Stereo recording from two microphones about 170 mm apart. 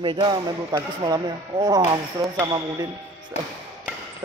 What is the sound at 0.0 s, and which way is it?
A man's voice, 25° right (ahead or behind).